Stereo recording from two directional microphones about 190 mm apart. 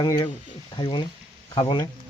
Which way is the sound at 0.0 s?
20° left (ahead or behind).